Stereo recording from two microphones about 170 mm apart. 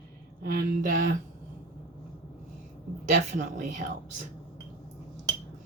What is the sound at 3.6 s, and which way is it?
Cutlery, 45° right (ahead or behind).